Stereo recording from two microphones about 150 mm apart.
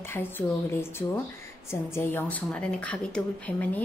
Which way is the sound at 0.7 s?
15° left (ahead or behind).